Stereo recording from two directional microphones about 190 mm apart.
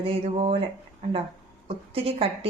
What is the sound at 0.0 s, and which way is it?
A woman's voice, 30° right (ahead or behind).